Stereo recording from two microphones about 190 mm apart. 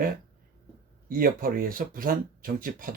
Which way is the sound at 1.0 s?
50° right (ahead or behind).